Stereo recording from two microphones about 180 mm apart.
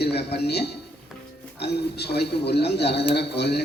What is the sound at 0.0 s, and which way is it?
A man's voice, 65° left (ahead or behind).